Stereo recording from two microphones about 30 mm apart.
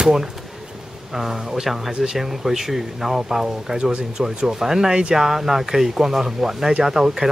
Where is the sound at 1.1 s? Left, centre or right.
Centre.